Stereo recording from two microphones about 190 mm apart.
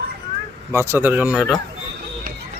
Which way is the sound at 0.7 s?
10° right (ahead or behind).